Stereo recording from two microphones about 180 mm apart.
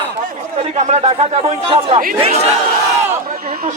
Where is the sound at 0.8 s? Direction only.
35° right (ahead or behind).